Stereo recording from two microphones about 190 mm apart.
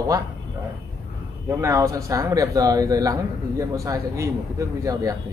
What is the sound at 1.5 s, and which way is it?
Speech, 15° right (ahead or behind).